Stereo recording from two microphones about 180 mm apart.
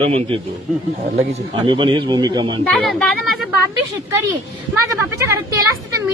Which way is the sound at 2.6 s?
5° left (ahead or behind).